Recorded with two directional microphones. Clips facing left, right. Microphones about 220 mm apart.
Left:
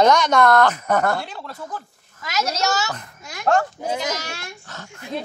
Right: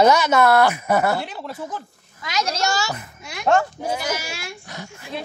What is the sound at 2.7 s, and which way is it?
Speech, 10° right (ahead or behind).